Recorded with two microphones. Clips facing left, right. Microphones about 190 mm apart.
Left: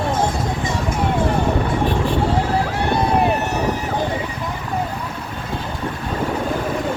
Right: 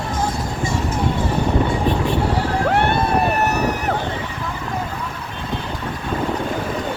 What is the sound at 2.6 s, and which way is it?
Vehicle, 65° right (ahead or behind).